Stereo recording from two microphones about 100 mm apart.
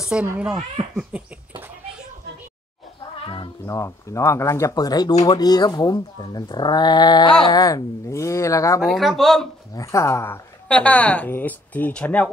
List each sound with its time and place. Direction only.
0.0 s a child's voice: 10° right (ahead or behind)
0.9 s a sound: 15° right (ahead or behind)
3.2 s cat: 60° left (ahead or behind)
3.6 s speech: 30° left (ahead or behind)
8.8 s speech: centre (ahead or behind)
9.8 s speech: 30° left (ahead or behind)
10.7 s a woman's voice: 15° left (ahead or behind)